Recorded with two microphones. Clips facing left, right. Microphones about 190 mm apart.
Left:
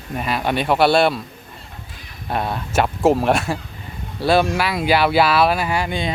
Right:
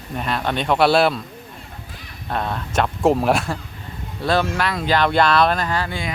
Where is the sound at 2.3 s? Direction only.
10° left (ahead or behind).